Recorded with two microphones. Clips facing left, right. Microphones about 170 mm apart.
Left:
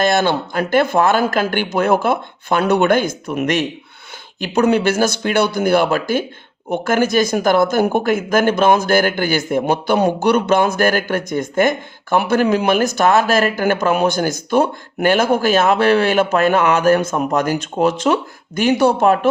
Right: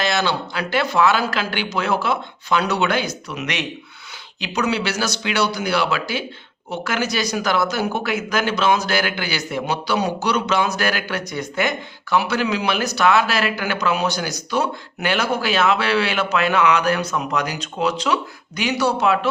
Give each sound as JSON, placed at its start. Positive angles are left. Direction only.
{"t": 0.0, "sound": "speech", "side_deg": 50}